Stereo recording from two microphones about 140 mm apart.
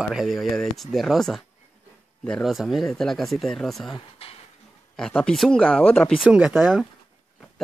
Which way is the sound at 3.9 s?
45° left (ahead or behind).